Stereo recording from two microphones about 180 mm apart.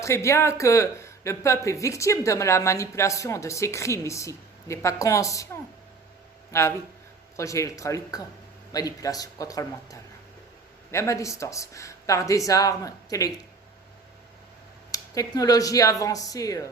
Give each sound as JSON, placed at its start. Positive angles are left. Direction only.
{"t": 0.0, "sound": "speech", "side_deg": 15}
{"t": 6.5, "sound": "speech", "side_deg": 15}
{"t": 14.9, "sound": "speech", "side_deg": 20}